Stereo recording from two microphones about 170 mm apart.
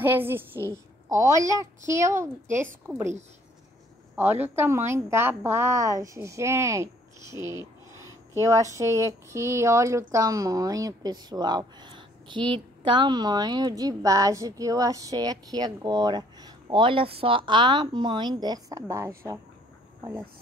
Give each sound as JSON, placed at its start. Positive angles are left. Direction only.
{"t": 0.0, "sound": "a woman's voice", "side_deg": -10}